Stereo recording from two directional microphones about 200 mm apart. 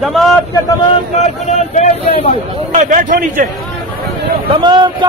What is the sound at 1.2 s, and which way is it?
Speech, 35° left (ahead or behind).